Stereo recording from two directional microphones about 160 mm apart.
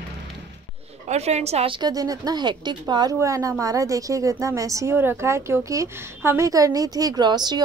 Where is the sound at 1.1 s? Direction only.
45° right (ahead or behind); by 7.6 s 25° right (ahead or behind).